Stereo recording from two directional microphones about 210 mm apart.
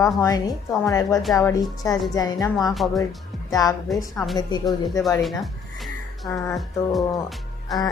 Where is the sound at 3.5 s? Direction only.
15° left (ahead or behind).